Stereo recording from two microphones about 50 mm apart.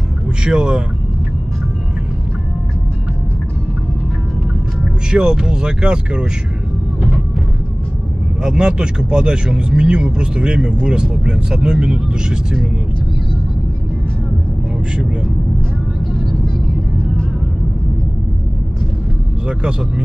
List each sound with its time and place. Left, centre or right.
0.4 s speech: centre
5.1 s speech: centre
8.4 s speech: centre
19.4 s speech: right